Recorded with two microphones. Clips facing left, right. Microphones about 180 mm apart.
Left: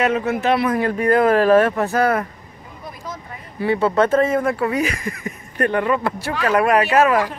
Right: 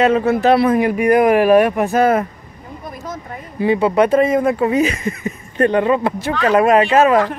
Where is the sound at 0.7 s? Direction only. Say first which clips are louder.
Right 3 dB; 15° right (ahead or behind).